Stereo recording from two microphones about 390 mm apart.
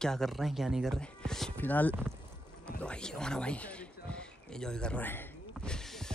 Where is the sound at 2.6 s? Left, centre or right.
Centre.